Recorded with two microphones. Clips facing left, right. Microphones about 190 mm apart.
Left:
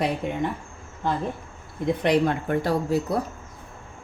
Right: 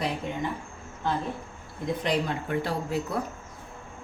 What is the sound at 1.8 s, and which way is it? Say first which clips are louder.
Speech: left 6 dB; 60° left (ahead or behind).